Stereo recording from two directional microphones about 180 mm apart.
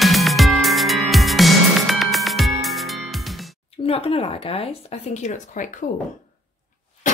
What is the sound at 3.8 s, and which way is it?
Speech, 35° left (ahead or behind).